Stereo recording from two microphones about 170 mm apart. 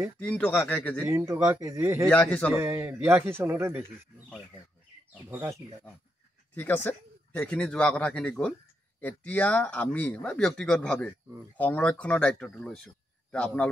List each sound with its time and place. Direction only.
0.2 s speech: 5° left (ahead or behind)
1.1 s speech: 15° right (ahead or behind)
2.0 s speech: 5° left (ahead or behind)
2.5 s speech: 15° right (ahead or behind)
5.3 s speech: 15° right (ahead or behind)
6.5 s speech: 10° left (ahead or behind)